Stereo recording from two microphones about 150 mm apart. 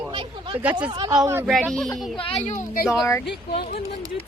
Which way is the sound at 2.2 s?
40° left (ahead or behind).